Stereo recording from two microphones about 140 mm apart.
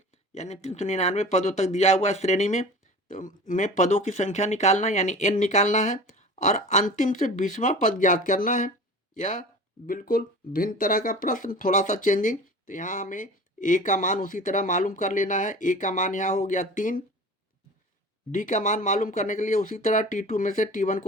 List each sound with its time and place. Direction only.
0.3 s speech: 50° left (ahead or behind)
3.1 s speech: 65° left (ahead or behind)
18.3 s speech: 65° left (ahead or behind)